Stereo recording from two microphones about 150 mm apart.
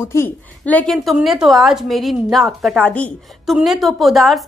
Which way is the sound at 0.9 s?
Centre (ahead or behind).